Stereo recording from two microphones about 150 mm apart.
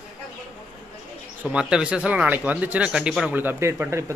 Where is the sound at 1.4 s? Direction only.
5° right (ahead or behind).